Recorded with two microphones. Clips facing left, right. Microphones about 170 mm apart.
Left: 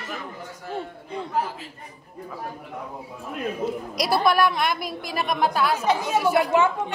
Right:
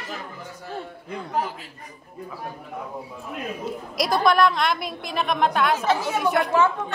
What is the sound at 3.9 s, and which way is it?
A woman's voice, 5° left (ahead or behind).